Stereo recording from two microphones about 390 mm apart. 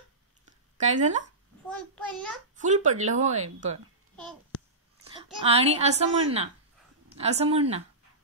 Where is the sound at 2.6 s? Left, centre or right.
Centre.